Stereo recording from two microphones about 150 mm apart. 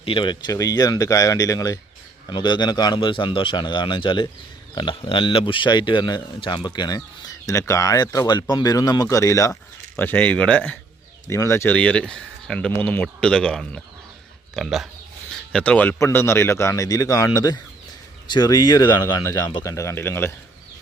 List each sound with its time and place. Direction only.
0.0 s speech: 35° left (ahead or behind); by 10.8 s 10° left (ahead or behind)
11.3 s speech: 20° left (ahead or behind); by 14.8 s centre (ahead or behind)
15.5 s speech: 10° left (ahead or behind)